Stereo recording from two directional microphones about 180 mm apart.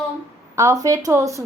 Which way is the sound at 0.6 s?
20° right (ahead or behind).